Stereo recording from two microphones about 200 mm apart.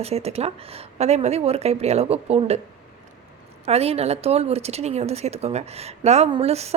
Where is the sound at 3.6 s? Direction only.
30° right (ahead or behind).